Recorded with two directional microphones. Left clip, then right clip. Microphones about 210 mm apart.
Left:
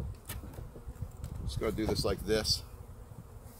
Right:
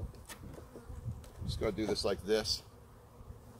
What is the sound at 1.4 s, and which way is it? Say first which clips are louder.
Speech: left 1 dB; 5° left (ahead or behind).